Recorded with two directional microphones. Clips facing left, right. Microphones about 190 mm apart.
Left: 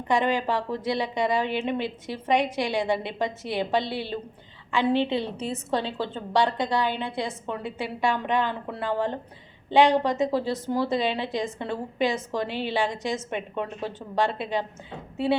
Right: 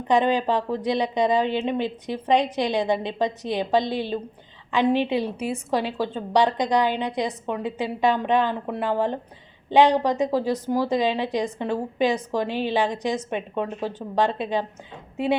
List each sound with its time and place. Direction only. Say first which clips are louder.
0.1 s a woman's voice: right 4 dB; 20° right (ahead or behind)